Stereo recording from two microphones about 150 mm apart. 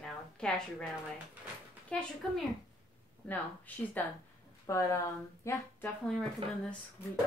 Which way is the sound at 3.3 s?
10° left (ahead or behind).